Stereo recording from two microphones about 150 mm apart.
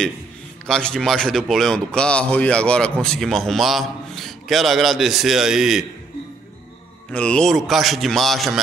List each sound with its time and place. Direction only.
0.7 s a man's voice: 5° left (ahead or behind)
7.1 s a man's voice: 5° left (ahead or behind)